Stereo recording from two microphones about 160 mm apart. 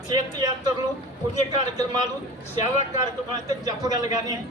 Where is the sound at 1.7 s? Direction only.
25° right (ahead or behind).